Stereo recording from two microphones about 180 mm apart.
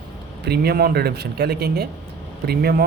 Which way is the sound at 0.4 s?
60° right (ahead or behind).